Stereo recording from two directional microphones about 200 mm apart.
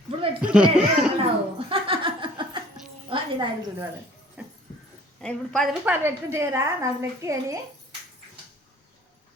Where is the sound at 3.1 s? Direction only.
25° right (ahead or behind).